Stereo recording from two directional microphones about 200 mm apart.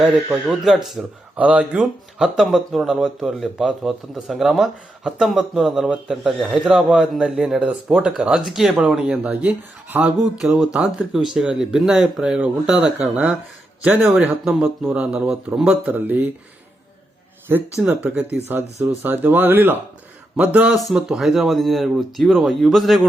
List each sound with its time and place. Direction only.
0.0 s speech: 5° right (ahead or behind)
17.5 s speech: 10° right (ahead or behind)